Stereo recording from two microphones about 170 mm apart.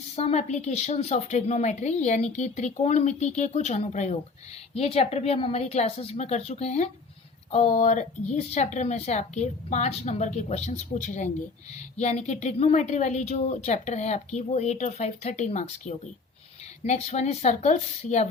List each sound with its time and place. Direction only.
0.2 s a woman's voice: 40° left (ahead or behind)